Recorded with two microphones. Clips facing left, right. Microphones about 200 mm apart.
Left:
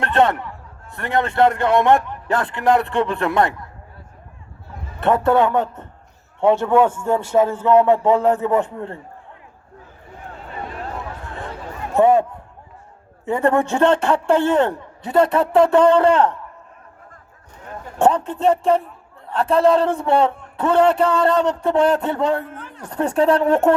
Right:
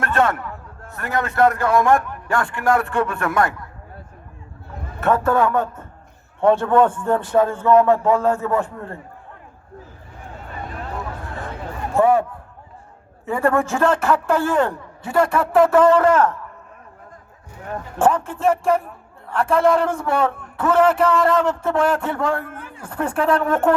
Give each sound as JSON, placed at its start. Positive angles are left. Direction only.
{"t": 0.0, "sound": "a sound", "side_deg": 30}
{"t": 1.1, "sound": "a man's voice", "side_deg": 30}
{"t": 5.1, "sound": "a man's voice", "side_deg": 20}
{"t": 6.7, "sound": "speech", "side_deg": 10}
{"t": 7.7, "sound": "a man's voice", "side_deg": 20}
{"t": 11.9, "sound": "a man's voice", "side_deg": 20}
{"t": 13.2, "sound": "a man's voice", "side_deg": 20}
{"t": 18.0, "sound": "a man's voice", "side_deg": 20}
{"t": 22.5, "sound": "a sound", "side_deg": -10}
{"t": 22.8, "sound": "speech", "side_deg": 40}
{"t": 23.1, "sound": "a man's voice", "side_deg": 25}